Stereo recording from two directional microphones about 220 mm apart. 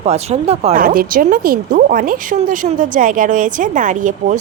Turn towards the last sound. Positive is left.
turn(degrees=-35)  # may be behind; listen again after turning